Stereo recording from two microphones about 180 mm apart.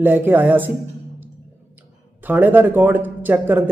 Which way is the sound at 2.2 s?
10° right (ahead or behind).